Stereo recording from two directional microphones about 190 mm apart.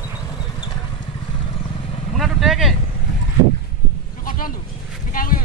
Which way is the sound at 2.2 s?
Centre (ahead or behind).